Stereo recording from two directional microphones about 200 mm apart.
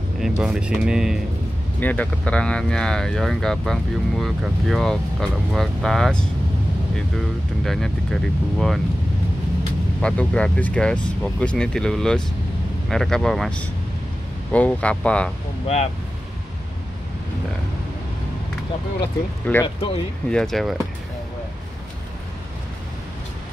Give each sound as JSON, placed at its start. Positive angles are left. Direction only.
{"t": 0.2, "sound": "speech", "side_deg": -5}
{"t": 10.0, "sound": "speech", "side_deg": 5}
{"t": 15.6, "sound": "speech", "side_deg": 35}
{"t": 19.5, "sound": "speech", "side_deg": 5}